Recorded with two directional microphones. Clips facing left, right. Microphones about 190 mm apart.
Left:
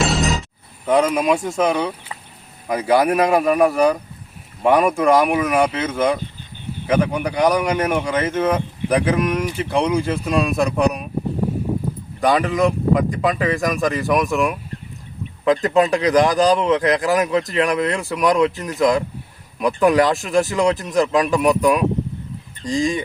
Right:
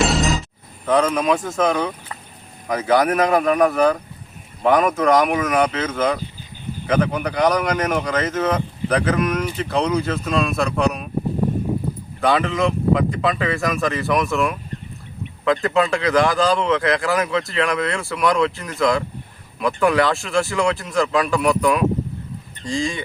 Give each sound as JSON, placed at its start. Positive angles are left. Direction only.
{"t": 0.0, "sound": "a sound", "side_deg": 0}
{"t": 0.9, "sound": "speech", "side_deg": 10}
{"t": 12.2, "sound": "speech", "side_deg": 15}